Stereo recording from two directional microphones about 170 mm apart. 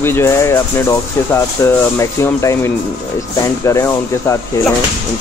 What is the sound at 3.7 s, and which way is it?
Speech, 15° left (ahead or behind).